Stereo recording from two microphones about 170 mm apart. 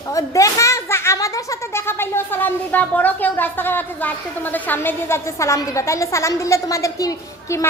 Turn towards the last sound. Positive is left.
turn(degrees=20)  # may be behind; listen again after turning